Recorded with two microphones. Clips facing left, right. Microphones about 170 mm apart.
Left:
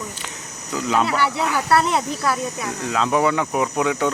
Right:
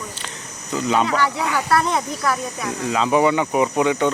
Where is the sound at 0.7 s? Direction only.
Centre (ahead or behind).